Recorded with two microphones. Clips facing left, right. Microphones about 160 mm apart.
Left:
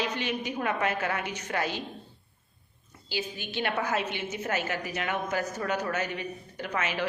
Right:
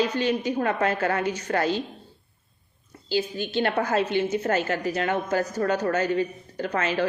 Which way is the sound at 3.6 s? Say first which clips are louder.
Right 5 dB; 40° right (ahead or behind).